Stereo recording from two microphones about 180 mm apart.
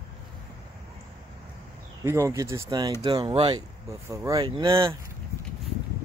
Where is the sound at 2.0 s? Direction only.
15° right (ahead or behind).